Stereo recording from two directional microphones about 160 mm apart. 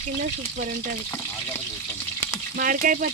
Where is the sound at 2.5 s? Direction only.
60° right (ahead or behind).